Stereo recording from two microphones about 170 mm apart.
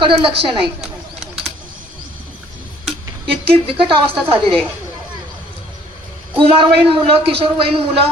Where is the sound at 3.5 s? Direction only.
30° right (ahead or behind).